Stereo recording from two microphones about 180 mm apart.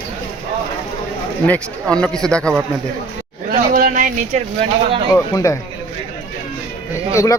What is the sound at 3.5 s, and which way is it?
Speech, 55° right (ahead or behind).